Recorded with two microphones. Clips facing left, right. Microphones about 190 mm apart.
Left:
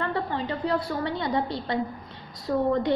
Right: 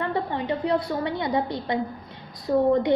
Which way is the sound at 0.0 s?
20° right (ahead or behind).